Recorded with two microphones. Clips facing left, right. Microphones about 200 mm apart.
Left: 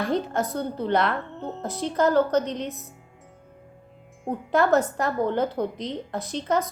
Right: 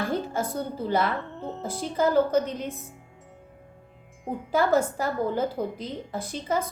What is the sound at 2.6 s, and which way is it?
Speech, 50° right (ahead or behind).